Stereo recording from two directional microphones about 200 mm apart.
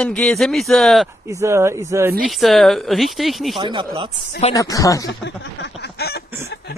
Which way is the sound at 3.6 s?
25° right (ahead or behind).